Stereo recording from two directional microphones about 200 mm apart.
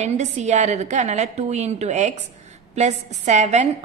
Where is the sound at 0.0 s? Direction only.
35° right (ahead or behind).